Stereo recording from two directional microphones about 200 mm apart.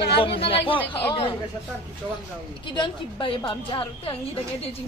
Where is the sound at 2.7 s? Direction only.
25° left (ahead or behind).